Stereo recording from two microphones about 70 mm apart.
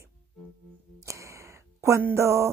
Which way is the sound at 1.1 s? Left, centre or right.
Right.